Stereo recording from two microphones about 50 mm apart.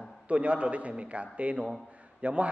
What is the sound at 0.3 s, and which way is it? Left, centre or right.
A man's voice, right.